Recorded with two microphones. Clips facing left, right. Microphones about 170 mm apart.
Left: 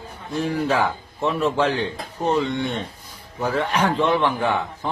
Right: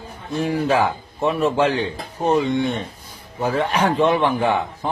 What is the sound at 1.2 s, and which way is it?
Speech, 10° right (ahead or behind).